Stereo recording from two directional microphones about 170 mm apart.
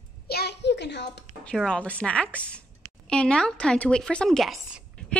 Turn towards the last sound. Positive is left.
turn(degrees=0)  # may be behind; listen again after turning